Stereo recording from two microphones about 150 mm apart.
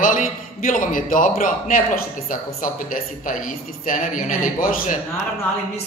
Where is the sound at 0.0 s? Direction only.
65° left (ahead or behind).